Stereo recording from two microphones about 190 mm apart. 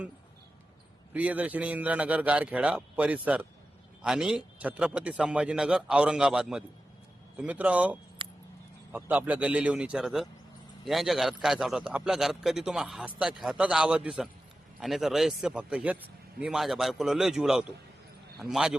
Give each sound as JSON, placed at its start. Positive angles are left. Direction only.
{"t": 1.1, "sound": "a man's voice", "side_deg": -10}
{"t": 8.2, "sound": "vehicle", "side_deg": -25}
{"t": 8.9, "sound": "a man's voice", "side_deg": -10}